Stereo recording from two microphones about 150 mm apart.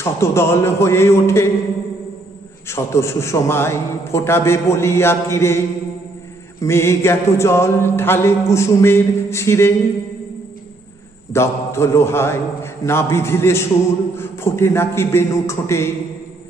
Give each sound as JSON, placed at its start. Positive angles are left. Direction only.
{"t": 0.0, "sound": "mantra", "side_deg": 15}
{"t": 2.7, "sound": "mantra", "side_deg": 20}
{"t": 6.6, "sound": "mantra", "side_deg": 15}
{"t": 11.3, "sound": "mantra", "side_deg": 15}